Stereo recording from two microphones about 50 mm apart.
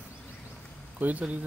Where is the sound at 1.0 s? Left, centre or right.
Right.